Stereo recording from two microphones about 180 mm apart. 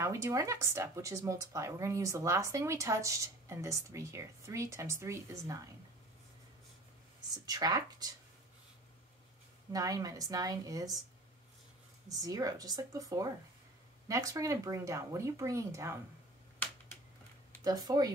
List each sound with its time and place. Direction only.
0.0 s speech: 15° right (ahead or behind)
7.4 s a woman's voice: 20° right (ahead or behind)
9.7 s a woman's voice: 20° right (ahead or behind)
12.1 s a woman's voice: 20° right (ahead or behind)
17.6 s a woman's voice: 20° right (ahead or behind)